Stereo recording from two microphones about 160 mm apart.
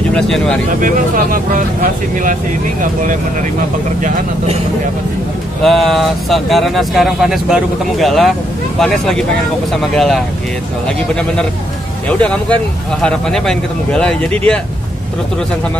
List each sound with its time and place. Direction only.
0.1 s speech: 5° left (ahead or behind)
0.7 s speech: 60° right (ahead or behind)
5.6 s speech: centre (ahead or behind)
12.1 s speech: 10° left (ahead or behind)